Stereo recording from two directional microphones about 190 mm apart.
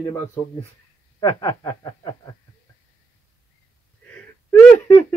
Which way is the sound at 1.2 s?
15° left (ahead or behind).